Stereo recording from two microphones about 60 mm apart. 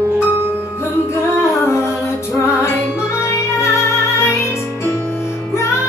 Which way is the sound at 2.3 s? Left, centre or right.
Left.